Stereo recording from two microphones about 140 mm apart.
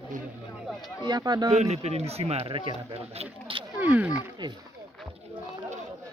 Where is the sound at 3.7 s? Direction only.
10° right (ahead or behind).